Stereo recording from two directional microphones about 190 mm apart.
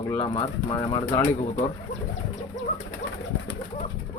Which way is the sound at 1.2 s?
40° left (ahead or behind).